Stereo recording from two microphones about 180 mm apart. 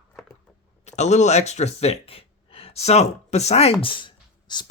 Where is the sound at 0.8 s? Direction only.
40° left (ahead or behind).